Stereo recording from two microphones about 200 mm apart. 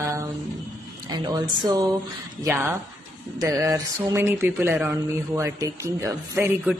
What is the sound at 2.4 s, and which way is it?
Speech, 10° right (ahead or behind).